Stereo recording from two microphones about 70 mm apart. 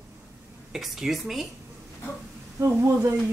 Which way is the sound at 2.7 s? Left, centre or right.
Right.